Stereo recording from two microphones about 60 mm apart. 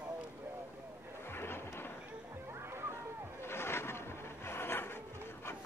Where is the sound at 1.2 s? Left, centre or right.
Left.